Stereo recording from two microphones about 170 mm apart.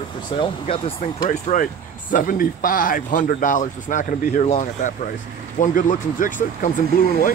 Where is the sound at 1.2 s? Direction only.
55° left (ahead or behind).